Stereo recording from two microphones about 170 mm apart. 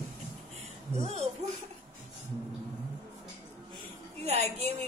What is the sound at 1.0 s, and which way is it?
Speech, 40° right (ahead or behind).